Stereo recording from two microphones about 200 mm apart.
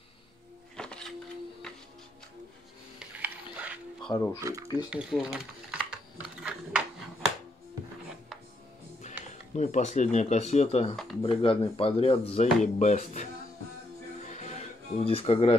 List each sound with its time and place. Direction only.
0.7 s a sound: 5° left (ahead or behind)
3.0 s music: 5° right (ahead or behind)
4.0 s speech: 15° left (ahead or behind)
4.4 s speech: 15° right (ahead or behind)
4.8 s speech: 5° right (ahead or behind)
9.0 s speech: 35° left (ahead or behind)
14.2 s music: 35° left (ahead or behind)